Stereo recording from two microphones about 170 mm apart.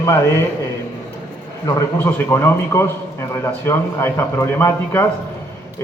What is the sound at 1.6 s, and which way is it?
A man's voice, 15° left (ahead or behind).